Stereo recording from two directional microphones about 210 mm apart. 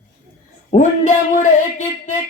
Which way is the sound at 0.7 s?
35° left (ahead or behind).